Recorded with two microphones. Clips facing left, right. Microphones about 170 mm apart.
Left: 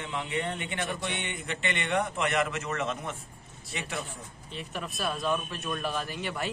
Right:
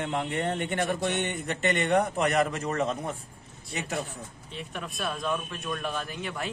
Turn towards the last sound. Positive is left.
turn(degrees=0)  # may be behind; listen again after turning